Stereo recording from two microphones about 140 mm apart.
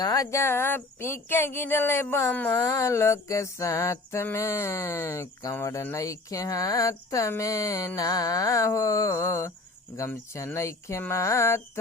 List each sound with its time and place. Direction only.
0.0 s speech: 25° left (ahead or behind)